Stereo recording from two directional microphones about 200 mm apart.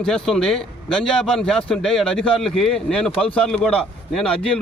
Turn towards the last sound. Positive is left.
turn(degrees=5)  # may be behind; listen again after turning